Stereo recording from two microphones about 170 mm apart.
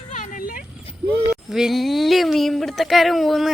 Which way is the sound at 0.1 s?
50° left (ahead or behind).